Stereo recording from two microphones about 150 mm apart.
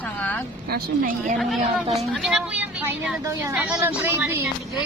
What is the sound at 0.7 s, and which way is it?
Speech, 65° right (ahead or behind).